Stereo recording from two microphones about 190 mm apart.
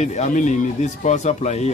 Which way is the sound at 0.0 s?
35° left (ahead or behind).